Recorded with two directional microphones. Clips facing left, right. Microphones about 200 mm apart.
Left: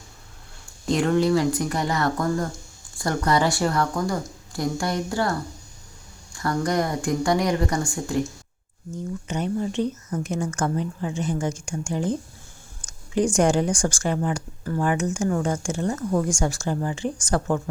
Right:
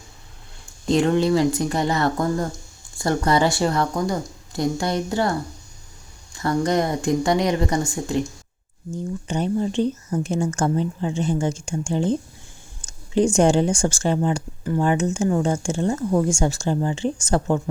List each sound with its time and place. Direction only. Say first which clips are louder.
0.9 s speech: right 2 dB; 25° right (ahead or behind)
6.3 s speech: right 3 dB; 20° right (ahead or behind)
9.2 s speech: right 3 dB; 30° right (ahead or behind)